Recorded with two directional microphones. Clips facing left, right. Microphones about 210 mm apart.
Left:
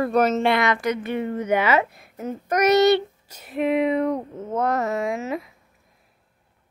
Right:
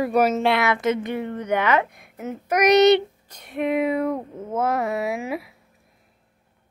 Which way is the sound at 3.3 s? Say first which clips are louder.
Left 1 dB; centre (ahead or behind).